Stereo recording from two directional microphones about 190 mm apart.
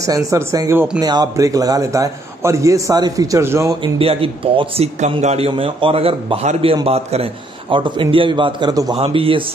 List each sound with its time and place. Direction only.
0.0 s speech: 15° right (ahead or behind)
3.8 s a man's voice: 30° right (ahead or behind)